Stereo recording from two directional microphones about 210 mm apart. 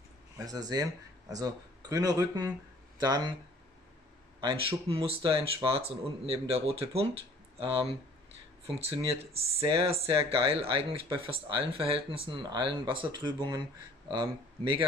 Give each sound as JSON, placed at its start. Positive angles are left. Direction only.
{"t": 0.5, "sound": "speech", "side_deg": -20}
{"t": 4.4, "sound": "speech", "side_deg": -25}